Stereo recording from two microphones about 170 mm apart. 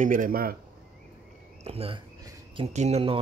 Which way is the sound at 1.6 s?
35° right (ahead or behind).